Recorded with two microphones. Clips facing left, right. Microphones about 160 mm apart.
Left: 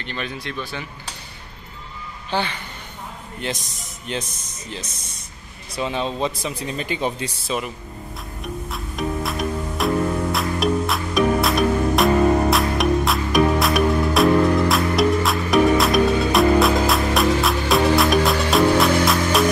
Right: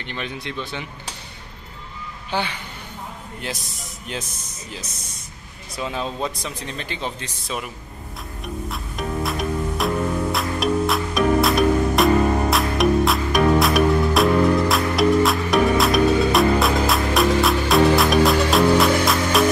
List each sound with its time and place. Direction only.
0.0 s speech: 15° right (ahead or behind)
2.3 s speech: 10° right (ahead or behind); by 7.5 s 10° left (ahead or behind)
8.6 s music: centre (ahead or behind)